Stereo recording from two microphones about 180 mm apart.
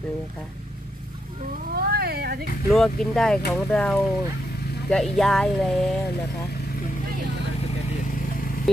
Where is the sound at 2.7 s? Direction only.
Centre (ahead or behind).